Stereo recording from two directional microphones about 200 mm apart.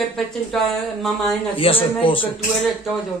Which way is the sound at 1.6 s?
25° left (ahead or behind).